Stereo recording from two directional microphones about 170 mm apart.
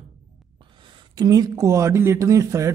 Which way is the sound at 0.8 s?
25° right (ahead or behind).